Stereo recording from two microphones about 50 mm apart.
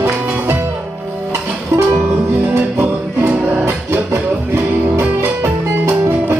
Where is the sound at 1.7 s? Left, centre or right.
Right.